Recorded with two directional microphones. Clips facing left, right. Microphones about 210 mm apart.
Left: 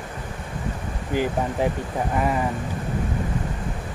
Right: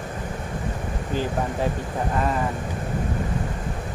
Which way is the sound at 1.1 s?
15° left (ahead or behind).